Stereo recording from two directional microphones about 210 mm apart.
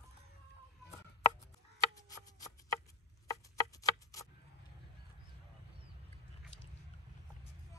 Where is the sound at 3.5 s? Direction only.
15° left (ahead or behind).